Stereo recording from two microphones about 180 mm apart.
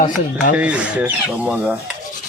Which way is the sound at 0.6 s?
5° right (ahead or behind).